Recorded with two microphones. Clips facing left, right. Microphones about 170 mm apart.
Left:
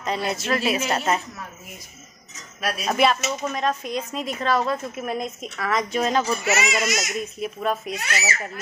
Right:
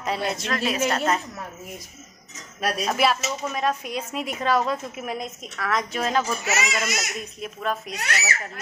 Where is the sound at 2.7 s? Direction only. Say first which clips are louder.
Left 3 dB; centre (ahead or behind).